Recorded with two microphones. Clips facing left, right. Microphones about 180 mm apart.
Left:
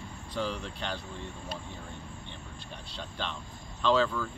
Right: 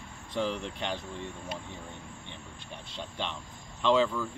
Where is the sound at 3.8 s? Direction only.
20° right (ahead or behind).